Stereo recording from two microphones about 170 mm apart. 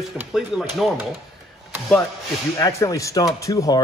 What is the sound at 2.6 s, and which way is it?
Speech, 20° left (ahead or behind).